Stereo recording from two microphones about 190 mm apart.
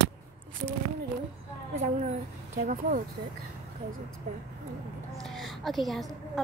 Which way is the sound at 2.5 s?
40° right (ahead or behind).